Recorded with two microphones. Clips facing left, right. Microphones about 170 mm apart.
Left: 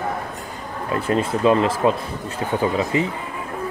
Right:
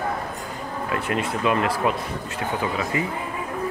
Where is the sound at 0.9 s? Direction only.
30° left (ahead or behind).